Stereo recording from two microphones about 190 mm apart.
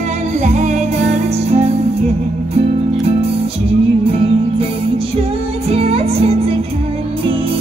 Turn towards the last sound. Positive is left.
turn(degrees=-30)  # may be behind; listen again after turning